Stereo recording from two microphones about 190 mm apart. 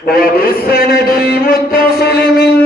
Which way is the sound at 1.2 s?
50° left (ahead or behind).